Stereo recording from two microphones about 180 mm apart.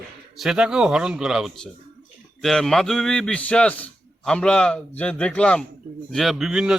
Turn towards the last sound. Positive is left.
turn(degrees=-5)  # may be behind; listen again after turning